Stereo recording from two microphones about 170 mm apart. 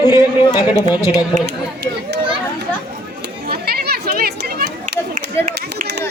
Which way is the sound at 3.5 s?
65° right (ahead or behind).